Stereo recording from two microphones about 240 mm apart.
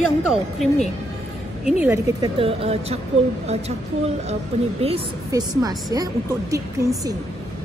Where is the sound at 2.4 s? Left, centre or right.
Right.